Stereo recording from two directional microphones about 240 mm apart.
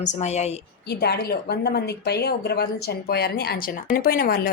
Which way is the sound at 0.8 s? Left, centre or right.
Left.